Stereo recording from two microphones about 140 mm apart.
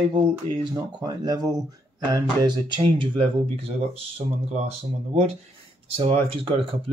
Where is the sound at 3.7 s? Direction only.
50° right (ahead or behind).